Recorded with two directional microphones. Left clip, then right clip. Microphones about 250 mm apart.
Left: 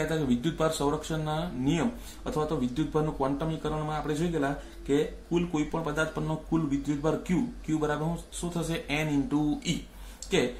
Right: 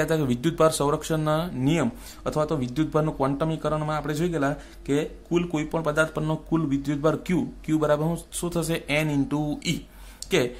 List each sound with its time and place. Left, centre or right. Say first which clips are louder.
0.1 s speech: right 4 dB; right